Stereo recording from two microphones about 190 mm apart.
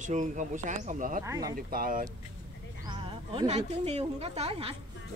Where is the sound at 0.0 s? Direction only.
40° right (ahead or behind).